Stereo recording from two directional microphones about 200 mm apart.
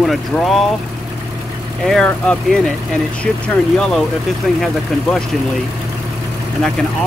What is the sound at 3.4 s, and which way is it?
Speech, 5° left (ahead or behind).